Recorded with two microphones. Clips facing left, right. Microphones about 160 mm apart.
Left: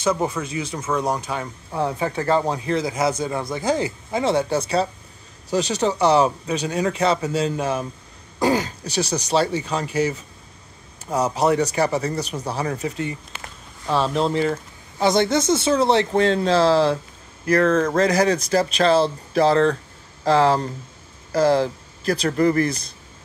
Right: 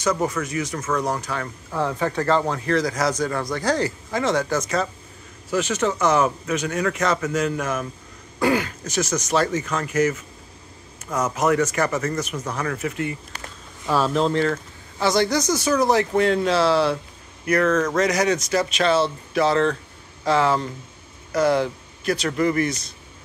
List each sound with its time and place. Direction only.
0.4 s speech: 25° left (ahead or behind)
0.7 s speech: 10° left (ahead or behind)
1.0 s speech: 20° left (ahead or behind)
2.1 s speech: 15° left (ahead or behind); by 12.6 s 35° left (ahead or behind)
12.9 s speech: 20° left (ahead or behind)
13.9 s speech: centre (ahead or behind); by 22.8 s 35° left (ahead or behind)